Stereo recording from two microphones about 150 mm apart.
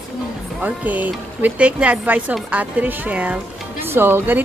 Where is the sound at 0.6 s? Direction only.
10° right (ahead or behind).